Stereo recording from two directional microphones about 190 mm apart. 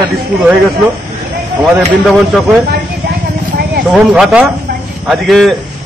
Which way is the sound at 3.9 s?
5° right (ahead or behind).